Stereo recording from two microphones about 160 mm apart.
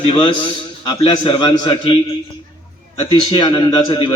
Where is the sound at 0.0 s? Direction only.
35° left (ahead or behind).